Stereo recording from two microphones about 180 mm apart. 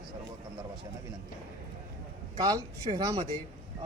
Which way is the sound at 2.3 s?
25° right (ahead or behind).